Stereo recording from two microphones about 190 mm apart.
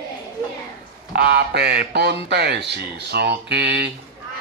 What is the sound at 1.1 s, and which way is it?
Speech, 60° right (ahead or behind).